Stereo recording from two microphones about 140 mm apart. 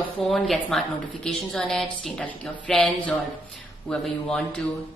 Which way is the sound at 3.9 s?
5° left (ahead or behind).